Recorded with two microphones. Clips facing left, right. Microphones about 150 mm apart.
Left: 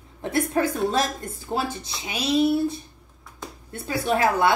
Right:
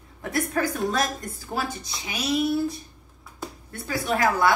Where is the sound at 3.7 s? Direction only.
25° left (ahead or behind).